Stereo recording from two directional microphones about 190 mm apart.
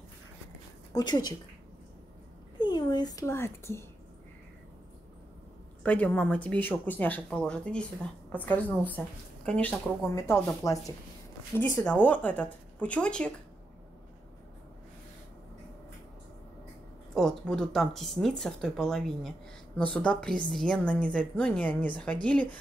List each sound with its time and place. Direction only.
0.9 s a woman's voice: 20° left (ahead or behind)
2.6 s speech: 20° left (ahead or behind)
5.9 s speech: 5° left (ahead or behind)
11.8 s speech: 10° left (ahead or behind)
17.1 s speech: 5° left (ahead or behind)